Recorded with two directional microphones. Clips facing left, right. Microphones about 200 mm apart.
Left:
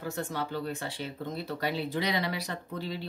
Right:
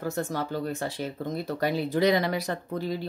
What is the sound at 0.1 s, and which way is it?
Speech, 45° right (ahead or behind).